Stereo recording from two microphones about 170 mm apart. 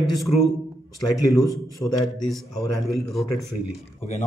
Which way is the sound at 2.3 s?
Centre (ahead or behind).